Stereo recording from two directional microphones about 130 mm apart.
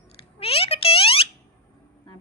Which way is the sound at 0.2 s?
45° left (ahead or behind).